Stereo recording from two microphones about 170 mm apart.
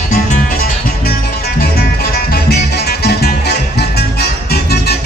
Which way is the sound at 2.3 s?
70° left (ahead or behind).